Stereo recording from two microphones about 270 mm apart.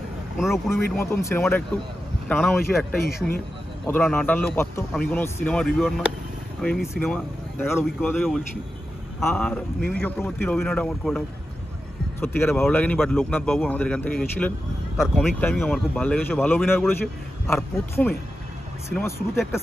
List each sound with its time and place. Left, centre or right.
0.9 s speech: centre